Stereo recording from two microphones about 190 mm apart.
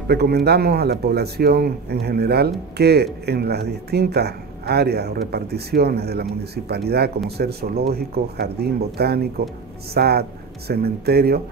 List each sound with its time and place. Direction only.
0.1 s speech: 60° right (ahead or behind)